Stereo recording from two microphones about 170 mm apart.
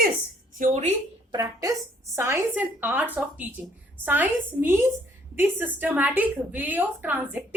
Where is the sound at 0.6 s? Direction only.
45° right (ahead or behind).